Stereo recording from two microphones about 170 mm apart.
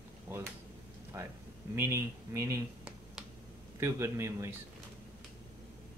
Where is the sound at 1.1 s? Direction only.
15° right (ahead or behind).